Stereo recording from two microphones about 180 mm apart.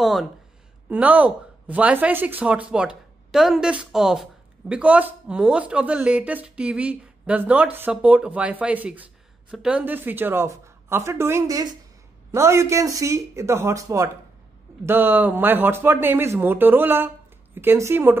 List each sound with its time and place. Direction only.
0.0 s speech: centre (ahead or behind)